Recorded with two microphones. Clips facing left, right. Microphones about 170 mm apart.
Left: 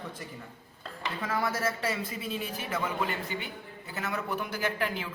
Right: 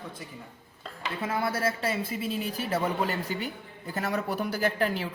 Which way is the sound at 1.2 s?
30° right (ahead or behind).